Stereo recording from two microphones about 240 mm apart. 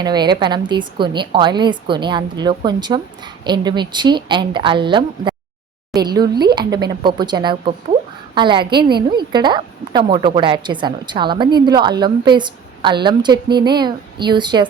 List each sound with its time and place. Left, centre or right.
0.0 s a woman's voice: centre